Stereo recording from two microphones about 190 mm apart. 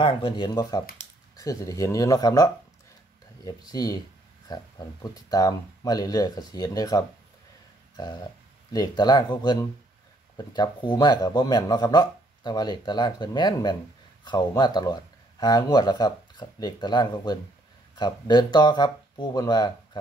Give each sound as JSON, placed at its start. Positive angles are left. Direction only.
{"t": 0.0, "sound": "a man's voice", "side_deg": 25}
{"t": 7.9, "sound": "a sound", "side_deg": 25}
{"t": 8.7, "sound": "a man's voice", "side_deg": 20}